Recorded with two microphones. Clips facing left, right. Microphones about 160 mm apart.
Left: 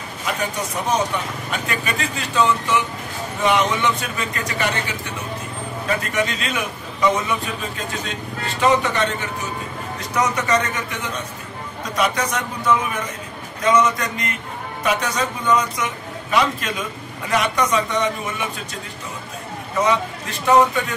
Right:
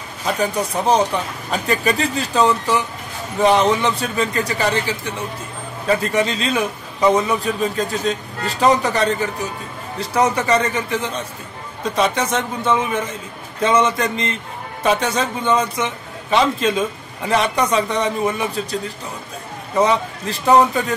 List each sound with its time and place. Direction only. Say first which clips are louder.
0.2 s a man's voice: right 5 dB; 35° right (ahead or behind)
19.8 s a man's voice: right 3 dB; 35° right (ahead or behind)